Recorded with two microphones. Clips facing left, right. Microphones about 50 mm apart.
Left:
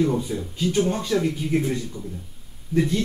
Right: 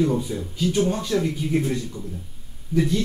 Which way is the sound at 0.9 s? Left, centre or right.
Left.